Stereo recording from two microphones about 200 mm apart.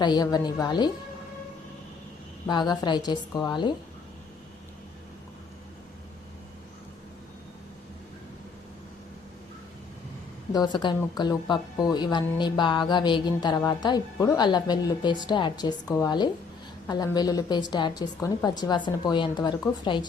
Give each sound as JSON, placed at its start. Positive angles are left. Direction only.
{"t": 0.0, "sound": "a woman's voice", "side_deg": 20}
{"t": 2.5, "sound": "a woman's voice", "side_deg": 20}
{"t": 10.5, "sound": "a woman's voice", "side_deg": 20}